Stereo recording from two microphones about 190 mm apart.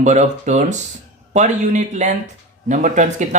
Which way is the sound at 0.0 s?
40° right (ahead or behind).